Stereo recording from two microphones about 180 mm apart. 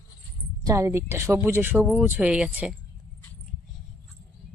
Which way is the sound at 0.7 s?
15° right (ahead or behind).